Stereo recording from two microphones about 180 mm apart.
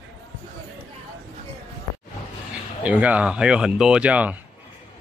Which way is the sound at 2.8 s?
10° right (ahead or behind).